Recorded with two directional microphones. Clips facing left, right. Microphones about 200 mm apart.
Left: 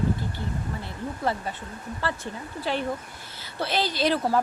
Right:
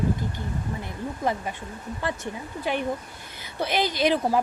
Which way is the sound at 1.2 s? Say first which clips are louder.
Right 1 dB; 15° right (ahead or behind).